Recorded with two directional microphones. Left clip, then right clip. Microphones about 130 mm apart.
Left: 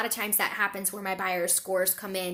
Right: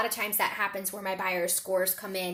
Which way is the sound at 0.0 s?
30° left (ahead or behind).